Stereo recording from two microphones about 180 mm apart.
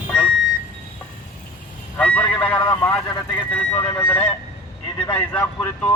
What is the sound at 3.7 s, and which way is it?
Speech, 10° left (ahead or behind).